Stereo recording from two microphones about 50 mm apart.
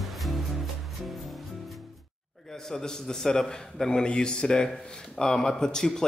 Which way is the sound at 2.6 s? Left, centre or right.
Centre.